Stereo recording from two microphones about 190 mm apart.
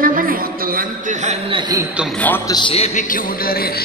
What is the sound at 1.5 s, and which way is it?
Speech, 20° right (ahead or behind).